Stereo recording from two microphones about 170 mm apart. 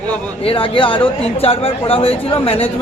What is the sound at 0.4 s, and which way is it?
Speech, 30° left (ahead or behind).